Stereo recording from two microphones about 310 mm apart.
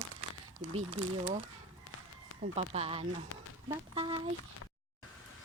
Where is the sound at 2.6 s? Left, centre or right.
Centre.